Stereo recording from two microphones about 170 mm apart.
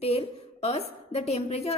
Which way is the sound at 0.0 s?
35° left (ahead or behind).